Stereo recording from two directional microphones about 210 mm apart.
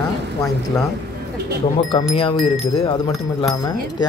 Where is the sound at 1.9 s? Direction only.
25° left (ahead or behind).